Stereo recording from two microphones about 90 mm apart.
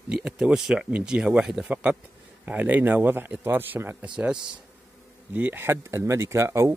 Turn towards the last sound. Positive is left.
turn(degrees=-30)  # may be behind; listen again after turning